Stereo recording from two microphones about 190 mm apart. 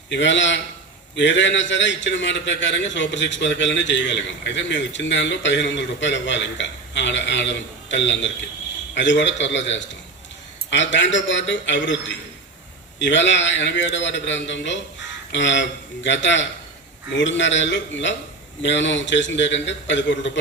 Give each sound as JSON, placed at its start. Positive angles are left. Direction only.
{"t": 0.1, "sound": "a man's voice", "side_deg": 70}